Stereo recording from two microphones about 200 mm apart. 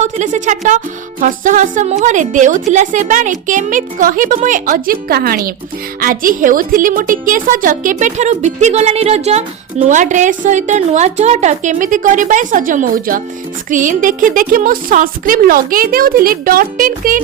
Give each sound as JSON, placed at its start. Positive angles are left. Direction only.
{"t": 0.0, "sound": "a woman's voice", "side_deg": -35}